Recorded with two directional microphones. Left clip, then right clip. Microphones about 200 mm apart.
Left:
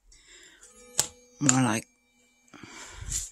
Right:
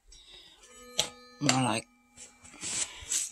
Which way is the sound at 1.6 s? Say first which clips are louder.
Left 2 dB; 55° left (ahead or behind).